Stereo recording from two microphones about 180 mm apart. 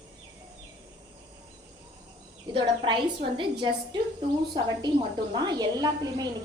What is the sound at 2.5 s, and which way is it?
A woman's voice, 25° right (ahead or behind).